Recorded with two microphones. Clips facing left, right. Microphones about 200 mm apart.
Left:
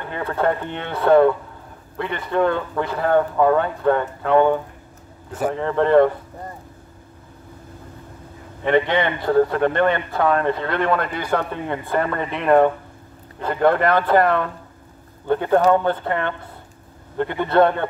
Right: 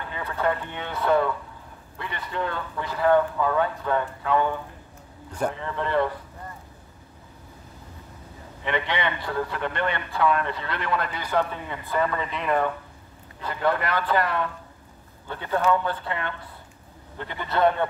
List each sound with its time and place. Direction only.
0.1 s speech: 55° left (ahead or behind)
8.6 s a man's voice: 50° left (ahead or behind)